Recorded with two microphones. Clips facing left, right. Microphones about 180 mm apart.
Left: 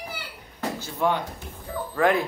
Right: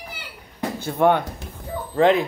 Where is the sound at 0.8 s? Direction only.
60° right (ahead or behind).